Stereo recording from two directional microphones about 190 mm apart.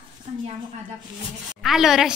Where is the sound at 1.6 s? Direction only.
Centre (ahead or behind).